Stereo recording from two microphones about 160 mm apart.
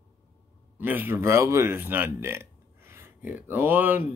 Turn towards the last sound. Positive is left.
turn(degrees=-10)  # may be behind; listen again after turning